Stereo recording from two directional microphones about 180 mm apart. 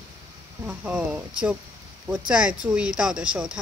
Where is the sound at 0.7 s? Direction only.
5° right (ahead or behind).